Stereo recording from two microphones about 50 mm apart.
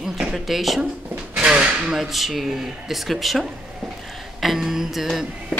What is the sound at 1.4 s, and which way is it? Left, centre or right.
Drawer open or close, centre.